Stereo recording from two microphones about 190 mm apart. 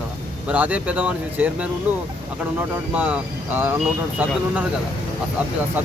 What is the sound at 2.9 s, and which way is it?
Speech, 5° right (ahead or behind).